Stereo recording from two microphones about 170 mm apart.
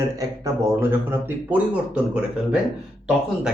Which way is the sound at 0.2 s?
20° right (ahead or behind).